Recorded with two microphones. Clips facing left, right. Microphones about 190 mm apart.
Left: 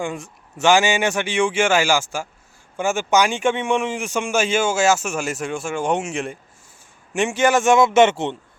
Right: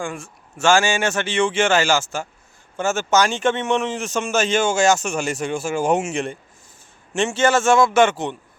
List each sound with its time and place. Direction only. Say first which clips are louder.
0.0 s a man's voice: left 2 dB; 20° left (ahead or behind); by 6.3 s centre (ahead or behind)
7.1 s a man's voice: even; 15° left (ahead or behind)